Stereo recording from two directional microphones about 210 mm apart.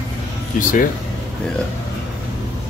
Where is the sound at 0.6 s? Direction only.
40° left (ahead or behind).